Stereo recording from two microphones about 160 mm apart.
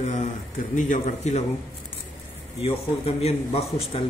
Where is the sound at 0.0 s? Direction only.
45° left (ahead or behind).